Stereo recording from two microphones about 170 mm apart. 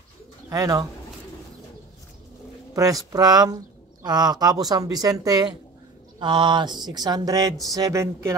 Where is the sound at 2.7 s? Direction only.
20° right (ahead or behind).